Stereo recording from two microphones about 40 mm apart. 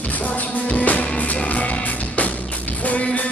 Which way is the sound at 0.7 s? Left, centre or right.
Left.